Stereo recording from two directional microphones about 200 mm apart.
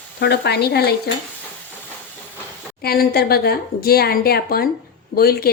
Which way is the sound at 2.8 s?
50° left (ahead or behind).